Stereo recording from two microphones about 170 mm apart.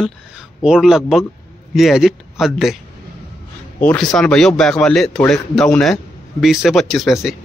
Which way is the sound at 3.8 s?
5° left (ahead or behind).